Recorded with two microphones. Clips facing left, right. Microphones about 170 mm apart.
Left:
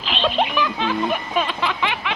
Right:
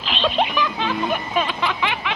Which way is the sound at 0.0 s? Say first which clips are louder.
Even; centre (ahead or behind).